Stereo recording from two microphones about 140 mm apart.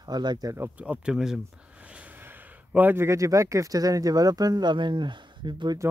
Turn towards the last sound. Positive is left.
turn(degrees=-35)  # may be behind; listen again after turning